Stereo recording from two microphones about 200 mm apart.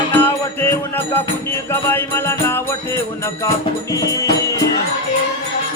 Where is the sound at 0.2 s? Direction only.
10° left (ahead or behind).